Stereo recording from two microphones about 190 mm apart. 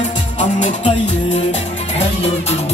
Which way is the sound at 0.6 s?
40° left (ahead or behind).